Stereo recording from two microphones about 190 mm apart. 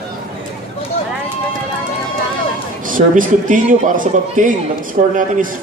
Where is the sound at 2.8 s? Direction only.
45° right (ahead or behind).